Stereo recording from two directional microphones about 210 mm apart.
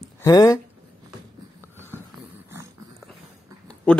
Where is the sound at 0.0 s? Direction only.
15° left (ahead or behind).